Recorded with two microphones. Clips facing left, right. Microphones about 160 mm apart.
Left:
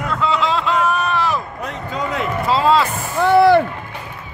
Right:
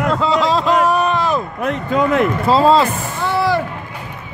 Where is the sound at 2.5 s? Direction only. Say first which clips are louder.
Right 3 dB; 30° right (ahead or behind).